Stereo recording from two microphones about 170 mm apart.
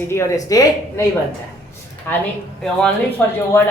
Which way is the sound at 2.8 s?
10° left (ahead or behind).